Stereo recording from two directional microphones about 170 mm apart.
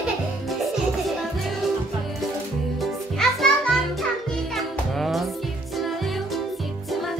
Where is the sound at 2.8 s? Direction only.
Centre (ahead or behind).